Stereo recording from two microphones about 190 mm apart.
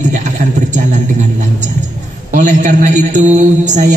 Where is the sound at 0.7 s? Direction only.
40° right (ahead or behind).